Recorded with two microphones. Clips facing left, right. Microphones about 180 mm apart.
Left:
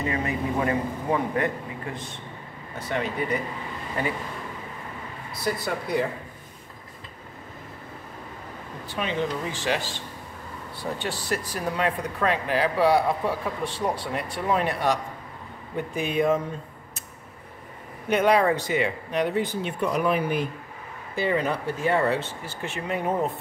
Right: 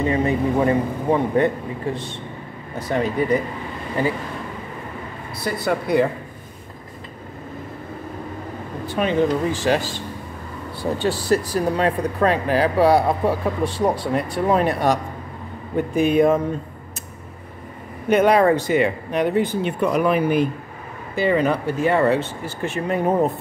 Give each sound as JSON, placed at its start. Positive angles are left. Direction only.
{"t": 0.0, "sound": "a man's voice", "side_deg": -30}
{"t": 5.3, "sound": "speech", "side_deg": -65}
{"t": 8.8, "sound": "speech", "side_deg": -50}
{"t": 18.1, "sound": "speech", "side_deg": -50}